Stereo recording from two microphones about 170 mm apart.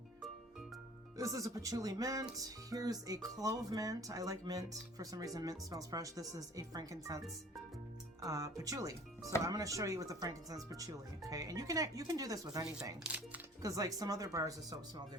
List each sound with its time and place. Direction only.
1.1 s speech: 20° right (ahead or behind)
8.2 s speech: 20° right (ahead or behind)
13.0 s music: 10° right (ahead or behind)
13.6 s speech: 20° right (ahead or behind)